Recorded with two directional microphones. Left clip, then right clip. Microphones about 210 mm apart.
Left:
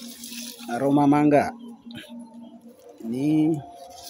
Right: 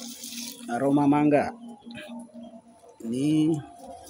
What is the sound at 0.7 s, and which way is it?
Speech, 15° left (ahead or behind).